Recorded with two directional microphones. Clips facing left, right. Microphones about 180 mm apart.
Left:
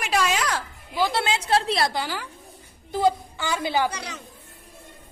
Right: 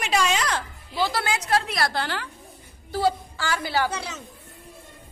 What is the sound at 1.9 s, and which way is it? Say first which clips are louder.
A woman's voice: right 1 dB; 10° left (ahead or behind).